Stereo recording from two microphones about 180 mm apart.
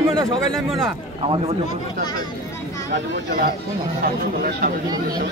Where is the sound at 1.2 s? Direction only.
30° right (ahead or behind).